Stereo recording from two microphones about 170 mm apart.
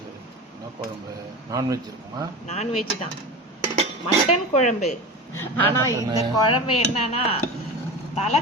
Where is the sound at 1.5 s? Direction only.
20° right (ahead or behind).